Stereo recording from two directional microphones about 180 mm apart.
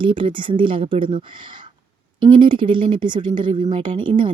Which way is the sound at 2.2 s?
25° right (ahead or behind).